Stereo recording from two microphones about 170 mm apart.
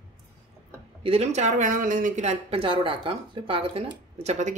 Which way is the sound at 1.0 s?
35° right (ahead or behind).